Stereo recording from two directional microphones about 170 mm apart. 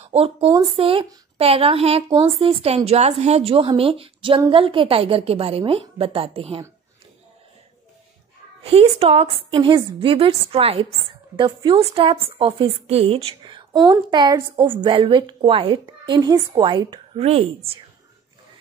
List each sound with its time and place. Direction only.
0.1 s a woman's voice: 35° right (ahead or behind)
8.6 s a woman's voice: 35° right (ahead or behind)